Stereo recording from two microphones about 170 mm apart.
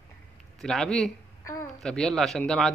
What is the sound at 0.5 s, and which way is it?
Speech, 5° left (ahead or behind).